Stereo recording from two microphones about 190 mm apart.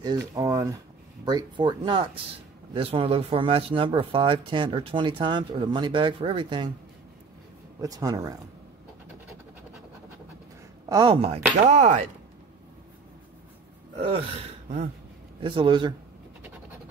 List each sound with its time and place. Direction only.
0.0 s speech: 20° right (ahead or behind)
7.8 s speech: 20° right (ahead or behind)
10.9 s speech: 25° right (ahead or behind)
14.1 s speech: 35° right (ahead or behind)